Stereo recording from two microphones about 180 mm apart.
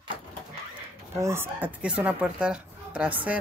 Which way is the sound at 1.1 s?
15° right (ahead or behind).